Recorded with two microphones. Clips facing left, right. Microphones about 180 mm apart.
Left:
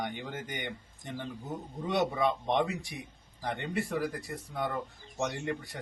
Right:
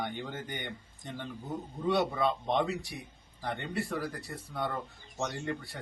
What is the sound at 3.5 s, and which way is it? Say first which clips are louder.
Speech: left 1 dB; 20° left (ahead or behind).